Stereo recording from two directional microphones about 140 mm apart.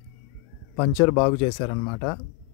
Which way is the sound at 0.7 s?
35° left (ahead or behind).